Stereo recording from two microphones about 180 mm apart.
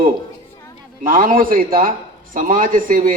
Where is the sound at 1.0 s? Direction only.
50° right (ahead or behind).